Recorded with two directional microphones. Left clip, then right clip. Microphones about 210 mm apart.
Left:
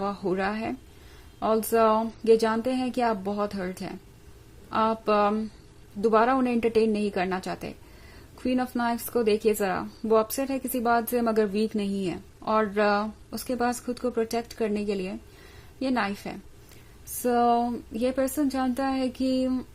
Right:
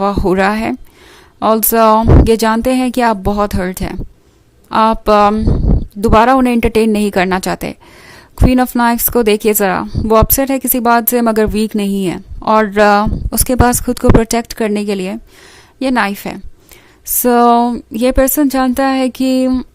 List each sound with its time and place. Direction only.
0.0 s a woman's voice: 40° right (ahead or behind)